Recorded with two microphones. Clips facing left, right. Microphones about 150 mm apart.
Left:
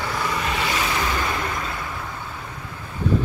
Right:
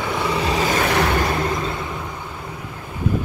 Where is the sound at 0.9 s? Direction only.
65° right (ahead or behind).